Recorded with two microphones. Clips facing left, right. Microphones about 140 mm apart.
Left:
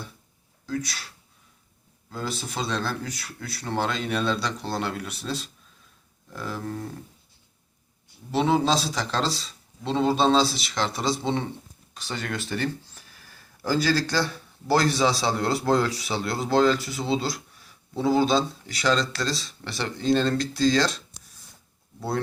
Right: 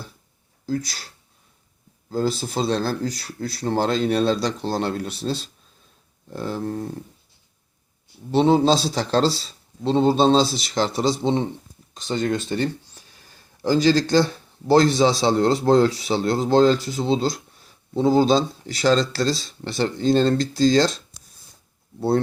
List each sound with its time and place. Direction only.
0.6 s speech: 35° right (ahead or behind)
8.3 s speech: 30° right (ahead or behind)
12.5 s a sound: 20° right (ahead or behind)
13.6 s speech: 20° right (ahead or behind)